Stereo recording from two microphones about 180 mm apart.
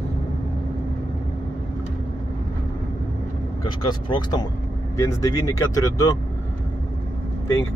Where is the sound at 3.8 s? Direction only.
25° left (ahead or behind).